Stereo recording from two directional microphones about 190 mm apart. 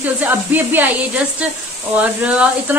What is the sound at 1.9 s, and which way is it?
Speech, 10° right (ahead or behind).